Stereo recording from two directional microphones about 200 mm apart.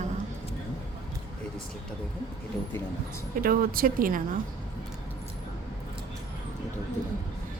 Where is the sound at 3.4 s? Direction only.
45° right (ahead or behind).